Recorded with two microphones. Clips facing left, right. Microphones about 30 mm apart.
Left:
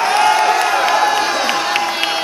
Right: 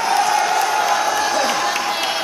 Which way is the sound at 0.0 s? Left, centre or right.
Left.